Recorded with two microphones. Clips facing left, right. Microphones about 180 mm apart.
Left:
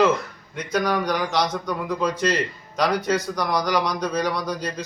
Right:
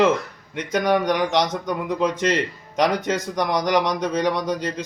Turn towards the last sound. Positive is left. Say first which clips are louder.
# right 3 dB
turn(degrees=-20)  # may be behind; listen again after turning